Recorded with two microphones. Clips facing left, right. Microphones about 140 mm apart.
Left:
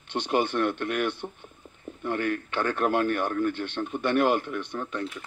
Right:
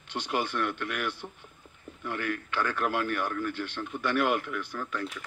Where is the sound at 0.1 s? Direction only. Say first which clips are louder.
Left 5 dB; 25° left (ahead or behind).